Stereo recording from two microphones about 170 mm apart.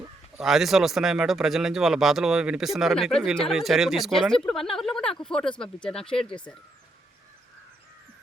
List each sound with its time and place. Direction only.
0.3 s speech: centre (ahead or behind)